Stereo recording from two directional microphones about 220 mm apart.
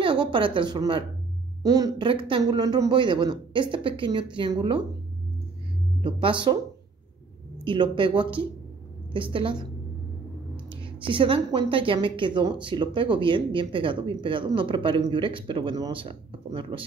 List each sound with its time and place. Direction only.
0.3 s speech: 20° right (ahead or behind)
6.0 s speech: 20° right (ahead or behind)
7.6 s speech: 20° right (ahead or behind)
10.8 s speech: 25° right (ahead or behind)